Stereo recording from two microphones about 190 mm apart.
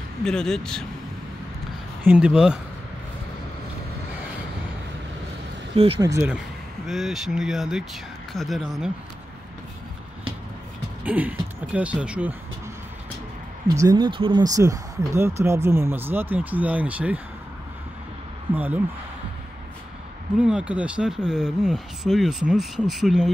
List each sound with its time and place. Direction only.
0.2 s speech: 5° left (ahead or behind)
2.0 s speech: 5° right (ahead or behind)
5.8 s speech: 30° right (ahead or behind)
6.0 s speech: 15° right (ahead or behind)
6.9 s speech: centre (ahead or behind)
11.1 s speech: 10° right (ahead or behind)
13.7 s speech: 20° right (ahead or behind)
18.5 s speech: 10° right (ahead or behind)
20.3 s speech: 5° right (ahead or behind)